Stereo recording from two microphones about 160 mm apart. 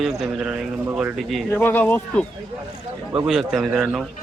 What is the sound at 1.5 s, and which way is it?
Speech, 10° left (ahead or behind).